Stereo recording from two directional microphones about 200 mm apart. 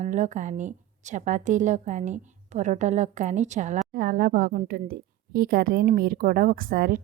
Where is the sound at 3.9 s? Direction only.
50° right (ahead or behind).